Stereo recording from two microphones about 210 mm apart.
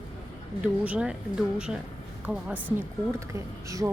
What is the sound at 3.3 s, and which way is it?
Speech, 15° right (ahead or behind).